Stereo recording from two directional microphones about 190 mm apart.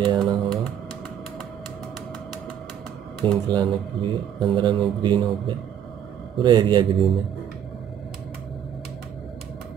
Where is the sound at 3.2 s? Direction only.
25° right (ahead or behind).